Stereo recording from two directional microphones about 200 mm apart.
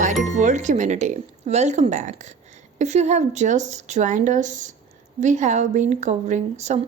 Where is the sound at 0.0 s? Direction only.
40° right (ahead or behind).